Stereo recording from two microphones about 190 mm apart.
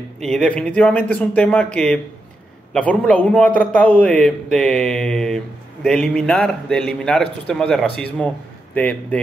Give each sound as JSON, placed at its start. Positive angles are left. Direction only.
{"t": 0.2, "sound": "a man's voice", "side_deg": 0}